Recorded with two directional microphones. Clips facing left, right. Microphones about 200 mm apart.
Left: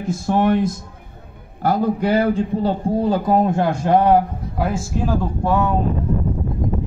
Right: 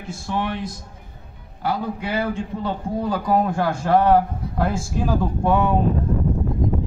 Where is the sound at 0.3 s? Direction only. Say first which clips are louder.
Left 9 dB; 45° left (ahead or behind); by 4.2 s 15° left (ahead or behind).